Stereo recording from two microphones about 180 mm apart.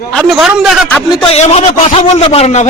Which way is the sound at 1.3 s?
35° left (ahead or behind).